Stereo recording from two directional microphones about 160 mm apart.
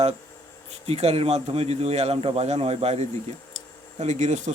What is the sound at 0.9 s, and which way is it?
A man's voice, 40° right (ahead or behind).